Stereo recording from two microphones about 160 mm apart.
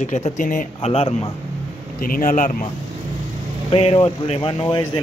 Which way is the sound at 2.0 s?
60° left (ahead or behind).